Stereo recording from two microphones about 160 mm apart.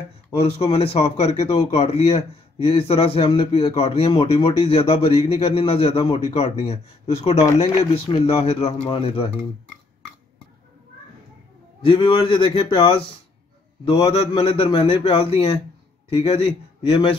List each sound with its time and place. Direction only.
0.3 s a man's voice: 35° left (ahead or behind)
11.8 s a man's voice: 35° left (ahead or behind)